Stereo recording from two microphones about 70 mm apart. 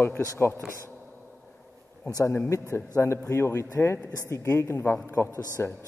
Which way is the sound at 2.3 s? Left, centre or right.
Left.